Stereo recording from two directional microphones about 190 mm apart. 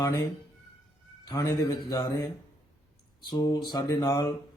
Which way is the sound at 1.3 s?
15° left (ahead or behind).